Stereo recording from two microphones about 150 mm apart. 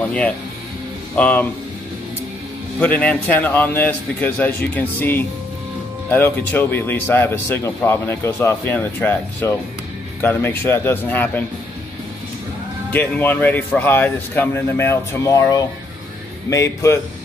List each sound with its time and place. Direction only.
1.1 s speech: 10° left (ahead or behind)
2.8 s speech: 10° left (ahead or behind)
12.9 s speech: 10° left (ahead or behind)